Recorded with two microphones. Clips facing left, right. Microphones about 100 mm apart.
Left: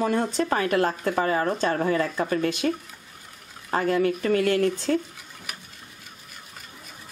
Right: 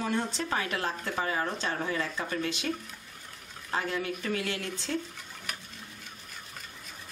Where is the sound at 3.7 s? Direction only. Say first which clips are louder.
Left 9 dB; 50° left (ahead or behind).